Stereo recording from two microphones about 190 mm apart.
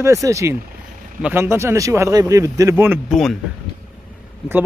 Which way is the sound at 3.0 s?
Centre (ahead or behind).